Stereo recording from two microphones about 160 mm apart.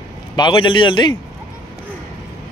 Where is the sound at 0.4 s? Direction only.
30° left (ahead or behind).